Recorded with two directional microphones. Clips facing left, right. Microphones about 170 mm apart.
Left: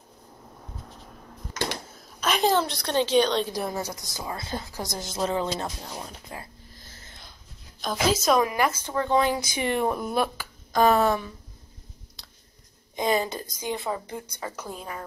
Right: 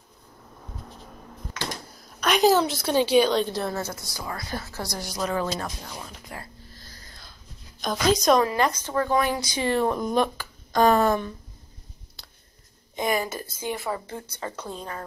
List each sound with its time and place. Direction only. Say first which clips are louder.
2.0 s a woman's voice: right 4 dB; centre (ahead or behind)
3.5 s a woman's voice: right 1 dB; 15° left (ahead or behind); by 6.3 s 35° left (ahead or behind)
6.3 s a sound: even; 20° left (ahead or behind)
7.8 s a woman's voice: right 2 dB; 5° left (ahead or behind)
12.2 s a sound: right 3 dB; centre (ahead or behind)
12.9 s speech: left 1 dB; 20° left (ahead or behind)